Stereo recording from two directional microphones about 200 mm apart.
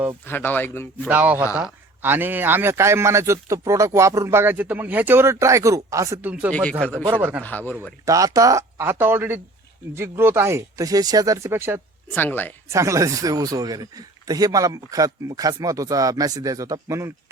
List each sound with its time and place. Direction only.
0.3 s speech: 10° left (ahead or behind)
1.0 s a man's voice: 10° right (ahead or behind)
6.5 s speech: 5° left (ahead or behind)
7.1 s a man's voice: 10° right (ahead or behind)
7.4 s speech: 10° left (ahead or behind)
8.0 s a man's voice: 15° right (ahead or behind)
12.1 s speech: 10° left (ahead or behind)
12.6 s a man's voice: 15° right (ahead or behind)